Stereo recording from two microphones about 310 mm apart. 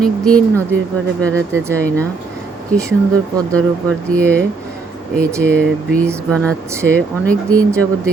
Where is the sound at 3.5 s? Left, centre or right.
Centre.